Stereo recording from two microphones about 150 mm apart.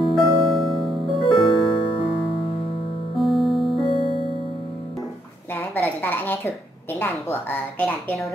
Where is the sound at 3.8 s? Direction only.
35° left (ahead or behind).